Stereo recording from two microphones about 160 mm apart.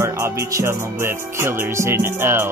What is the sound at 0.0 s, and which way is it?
Music, 15° right (ahead or behind).